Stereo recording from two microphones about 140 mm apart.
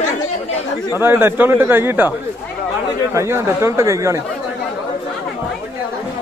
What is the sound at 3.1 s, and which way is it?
Speech, 20° right (ahead or behind).